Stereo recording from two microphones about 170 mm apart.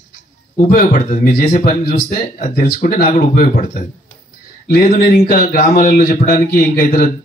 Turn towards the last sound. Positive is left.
turn(degrees=55)  # may be behind; listen again after turning